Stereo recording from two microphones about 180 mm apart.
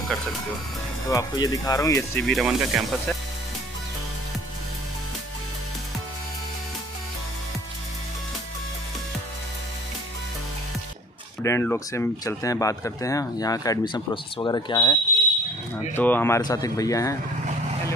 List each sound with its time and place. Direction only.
1.1 s speech: 20° left (ahead or behind)
2.2 s speech: centre (ahead or behind)
11.4 s speech: 15° left (ahead or behind)
15.9 s speech: 10° left (ahead or behind)